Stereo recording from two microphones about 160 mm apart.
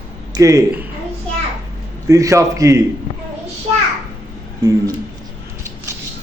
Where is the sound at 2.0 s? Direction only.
20° right (ahead or behind).